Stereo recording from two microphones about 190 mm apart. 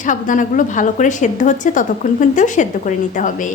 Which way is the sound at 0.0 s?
40° left (ahead or behind).